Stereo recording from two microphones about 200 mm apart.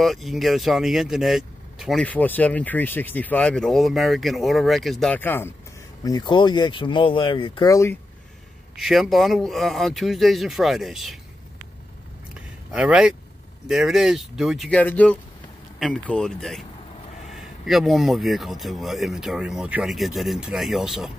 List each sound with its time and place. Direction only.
0.0 s speech: centre (ahead or behind)
6.0 s speech: 20° left (ahead or behind)
8.7 s speech: centre (ahead or behind)
12.7 s speech: 5° right (ahead or behind)